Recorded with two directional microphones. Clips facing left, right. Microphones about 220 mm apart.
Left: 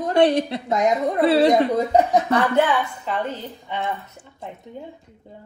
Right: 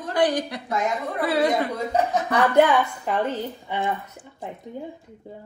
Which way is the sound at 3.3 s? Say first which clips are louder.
Right 2 dB; 10° right (ahead or behind).